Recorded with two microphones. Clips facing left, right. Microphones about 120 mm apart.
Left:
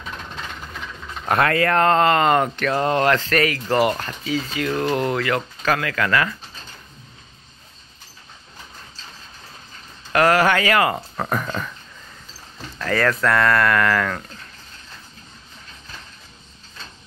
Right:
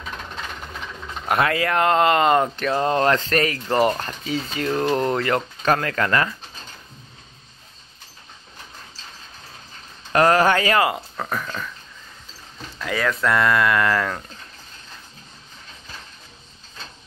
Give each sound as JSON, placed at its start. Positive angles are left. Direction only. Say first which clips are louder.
{"t": 1.4, "sound": "speech", "louder": "left 3 dB", "side_deg": -15}
{"t": 4.0, "sound": "speech", "louder": "left 1 dB", "side_deg": -30}
{"t": 10.1, "sound": "speech", "louder": "even", "side_deg": -25}
{"t": 11.1, "sound": "speech", "louder": "left 3 dB", "side_deg": 10}
{"t": 11.4, "sound": "speech", "louder": "left 3 dB", "side_deg": 20}
{"t": 12.7, "sound": "speech", "louder": "left 3 dB", "side_deg": -10}